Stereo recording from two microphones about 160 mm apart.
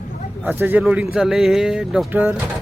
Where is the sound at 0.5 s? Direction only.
15° right (ahead or behind).